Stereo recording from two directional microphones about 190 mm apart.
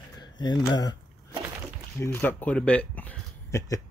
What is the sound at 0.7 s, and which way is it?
Speech, 20° left (ahead or behind).